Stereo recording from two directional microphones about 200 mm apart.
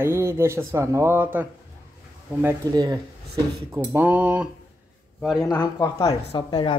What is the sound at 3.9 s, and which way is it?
Speech, 5° right (ahead or behind).